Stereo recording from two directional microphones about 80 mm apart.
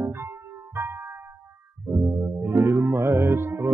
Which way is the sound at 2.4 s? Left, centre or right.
Right.